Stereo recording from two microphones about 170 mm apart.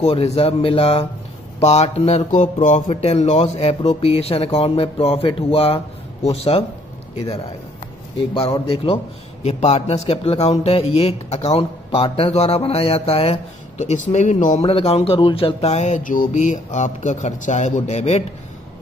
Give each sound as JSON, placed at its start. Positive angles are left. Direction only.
{"t": 0.0, "sound": "a man's voice", "side_deg": 40}
{"t": 8.4, "sound": "a man's voice", "side_deg": 30}
{"t": 14.7, "sound": "speech", "side_deg": 35}